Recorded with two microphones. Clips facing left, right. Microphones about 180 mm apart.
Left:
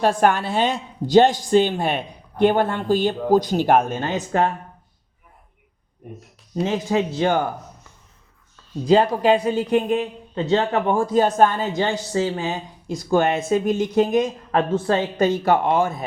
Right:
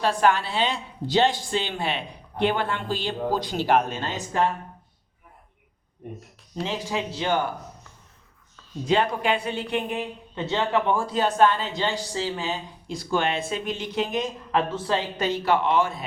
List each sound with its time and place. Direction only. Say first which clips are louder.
0.0 s a woman's voice: left 4 dB; 50° left (ahead or behind)
6.6 s a woman's voice: left 7 dB; 50° left (ahead or behind)
8.9 s a woman's voice: left 7 dB; 35° left (ahead or behind)